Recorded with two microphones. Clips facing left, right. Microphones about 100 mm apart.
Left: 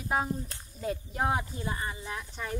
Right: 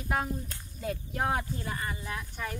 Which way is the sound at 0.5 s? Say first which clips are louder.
Left 1 dB; 25° left (ahead or behind).